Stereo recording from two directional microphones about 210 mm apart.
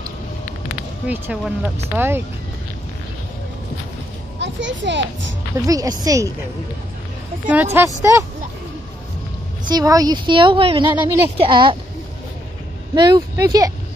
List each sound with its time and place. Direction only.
1.0 s a woman's voice: 5° right (ahead or behind)
4.4 s a child's voice: 60° right (ahead or behind)
5.7 s a woman's voice: 15° right (ahead or behind)
7.4 s a woman's voice: 10° right (ahead or behind)
9.7 s a woman's voice: 15° right (ahead or behind)
12.9 s a woman's voice: 20° right (ahead or behind)